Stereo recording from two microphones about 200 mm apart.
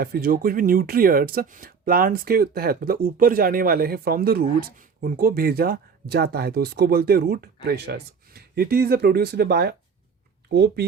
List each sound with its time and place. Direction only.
0.0 s speech: 50° right (ahead or behind)